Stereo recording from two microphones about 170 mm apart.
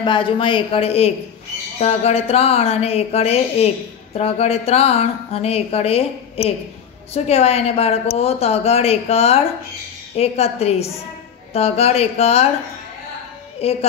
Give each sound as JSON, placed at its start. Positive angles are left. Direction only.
{"t": 0.0, "sound": "speech", "side_deg": 30}
{"t": 13.6, "sound": "speech", "side_deg": 35}